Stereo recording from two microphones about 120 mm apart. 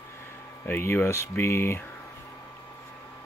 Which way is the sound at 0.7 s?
20° left (ahead or behind).